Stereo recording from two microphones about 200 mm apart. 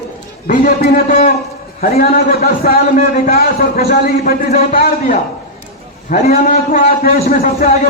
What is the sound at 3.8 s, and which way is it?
A man's voice, 35° left (ahead or behind).